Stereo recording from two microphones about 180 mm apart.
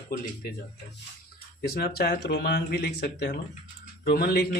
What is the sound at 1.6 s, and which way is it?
Speech, 60° left (ahead or behind).